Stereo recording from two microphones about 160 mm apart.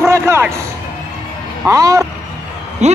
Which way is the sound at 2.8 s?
45° right (ahead or behind).